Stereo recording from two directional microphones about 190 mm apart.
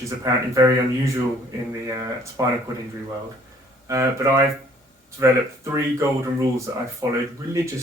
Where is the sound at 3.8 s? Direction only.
15° right (ahead or behind).